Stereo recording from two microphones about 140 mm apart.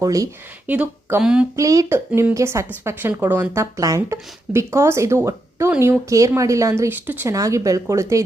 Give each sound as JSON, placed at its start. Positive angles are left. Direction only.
{"t": 0.0, "sound": "speech", "side_deg": -25}
{"t": 0.7, "sound": "speech", "side_deg": -10}
{"t": 1.5, "sound": "speech", "side_deg": -25}